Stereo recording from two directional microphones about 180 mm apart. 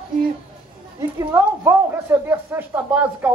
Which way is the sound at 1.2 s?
10° right (ahead or behind).